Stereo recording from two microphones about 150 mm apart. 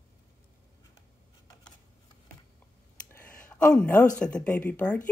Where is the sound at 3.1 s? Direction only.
10° left (ahead or behind).